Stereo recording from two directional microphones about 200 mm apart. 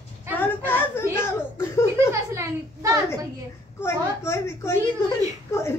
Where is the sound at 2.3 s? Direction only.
15° right (ahead or behind).